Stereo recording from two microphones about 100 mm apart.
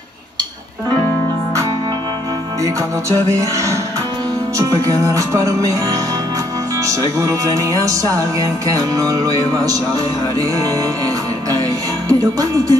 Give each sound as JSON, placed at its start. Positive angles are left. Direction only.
{"t": 2.6, "sound": "music", "side_deg": -30}
{"t": 12.1, "sound": "music", "side_deg": -35}